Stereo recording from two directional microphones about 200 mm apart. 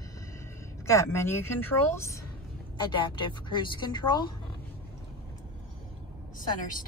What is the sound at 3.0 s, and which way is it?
Speech, 25° left (ahead or behind).